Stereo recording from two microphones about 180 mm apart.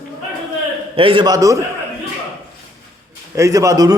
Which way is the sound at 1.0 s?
30° right (ahead or behind).